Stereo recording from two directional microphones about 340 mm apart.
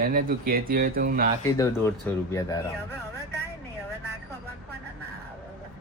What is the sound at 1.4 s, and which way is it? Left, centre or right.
Speech, centre.